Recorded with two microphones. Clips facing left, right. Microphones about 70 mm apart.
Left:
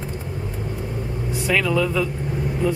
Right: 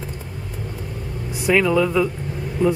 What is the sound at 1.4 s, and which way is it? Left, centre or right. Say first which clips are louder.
Speech: right 4 dB; centre.